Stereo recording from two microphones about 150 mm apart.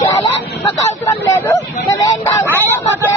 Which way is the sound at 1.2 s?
20° left (ahead or behind).